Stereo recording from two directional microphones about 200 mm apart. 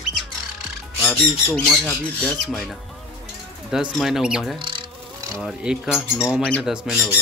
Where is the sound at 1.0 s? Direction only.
Centre (ahead or behind).